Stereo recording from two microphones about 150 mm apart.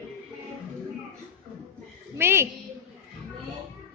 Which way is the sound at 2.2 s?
15° right (ahead or behind).